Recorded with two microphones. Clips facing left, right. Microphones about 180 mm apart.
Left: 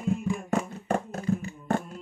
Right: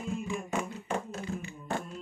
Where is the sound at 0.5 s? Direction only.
50° left (ahead or behind).